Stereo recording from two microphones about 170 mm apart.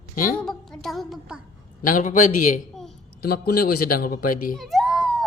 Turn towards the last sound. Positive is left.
turn(degrees=0)  # may be behind; listen again after turning